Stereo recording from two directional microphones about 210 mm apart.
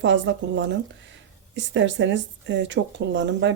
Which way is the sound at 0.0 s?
60° right (ahead or behind).